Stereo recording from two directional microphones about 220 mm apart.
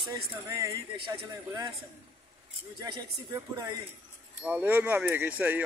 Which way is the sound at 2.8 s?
20° right (ahead or behind).